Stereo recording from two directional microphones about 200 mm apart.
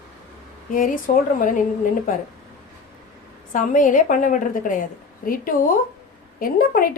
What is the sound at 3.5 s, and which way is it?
A woman's voice, 40° left (ahead or behind).